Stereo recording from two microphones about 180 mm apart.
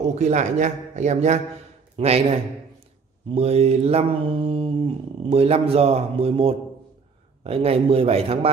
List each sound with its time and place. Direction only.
0.0 s speech: 40° right (ahead or behind)